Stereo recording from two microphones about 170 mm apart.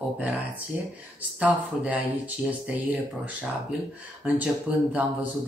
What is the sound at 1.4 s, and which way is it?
Speech, 10° right (ahead or behind).